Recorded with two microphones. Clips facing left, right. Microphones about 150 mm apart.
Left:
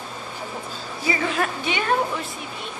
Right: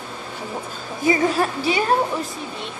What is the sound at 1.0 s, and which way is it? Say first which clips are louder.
Speech: right 5 dB; 35° right (ahead or behind).